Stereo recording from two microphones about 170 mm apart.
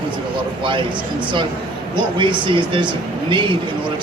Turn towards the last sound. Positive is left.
turn(degrees=-30)  # may be behind; listen again after turning